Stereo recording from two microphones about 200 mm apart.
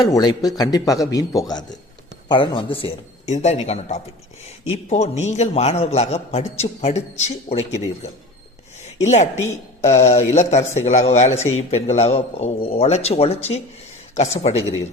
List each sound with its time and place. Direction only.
0.0 s a man's voice: 20° left (ahead or behind)
9.0 s a man's voice: 35° left (ahead or behind)